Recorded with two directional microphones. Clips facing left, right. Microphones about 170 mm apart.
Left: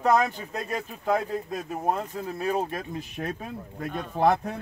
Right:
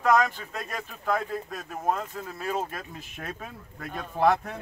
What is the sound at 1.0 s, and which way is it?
Speech, 15° left (ahead or behind).